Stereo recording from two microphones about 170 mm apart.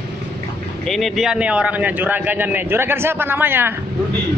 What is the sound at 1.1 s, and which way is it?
A man's voice, 5° right (ahead or behind).